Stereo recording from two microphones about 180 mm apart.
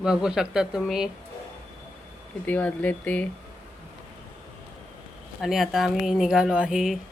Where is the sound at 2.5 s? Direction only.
10° left (ahead or behind).